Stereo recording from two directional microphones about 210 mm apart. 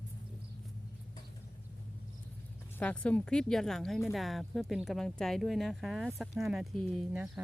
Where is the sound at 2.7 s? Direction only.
5° left (ahead or behind).